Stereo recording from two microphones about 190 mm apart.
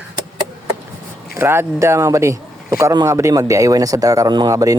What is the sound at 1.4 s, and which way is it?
Speech, 15° right (ahead or behind).